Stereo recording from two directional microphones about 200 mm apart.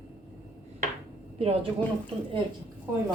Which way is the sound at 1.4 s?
30° right (ahead or behind).